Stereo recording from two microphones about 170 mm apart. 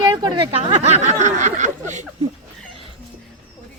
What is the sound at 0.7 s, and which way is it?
Speech, 40° right (ahead or behind).